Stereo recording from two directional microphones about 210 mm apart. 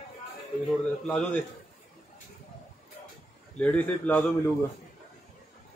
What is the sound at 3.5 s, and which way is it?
Speech, 5° left (ahead or behind).